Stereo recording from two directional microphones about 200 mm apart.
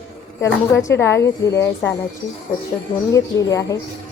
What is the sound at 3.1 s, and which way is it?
Speech, 15° left (ahead or behind).